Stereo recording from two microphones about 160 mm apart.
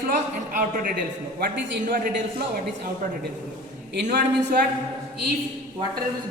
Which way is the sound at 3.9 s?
90° right.